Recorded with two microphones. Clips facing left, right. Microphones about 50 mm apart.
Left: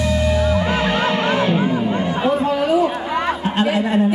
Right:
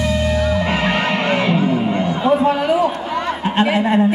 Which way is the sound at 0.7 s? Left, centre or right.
Right.